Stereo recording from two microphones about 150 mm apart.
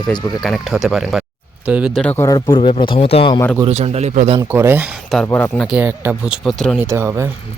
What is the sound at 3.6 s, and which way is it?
Speech, 45° right (ahead or behind).